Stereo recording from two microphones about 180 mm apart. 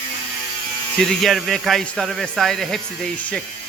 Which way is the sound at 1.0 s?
Centre (ahead or behind).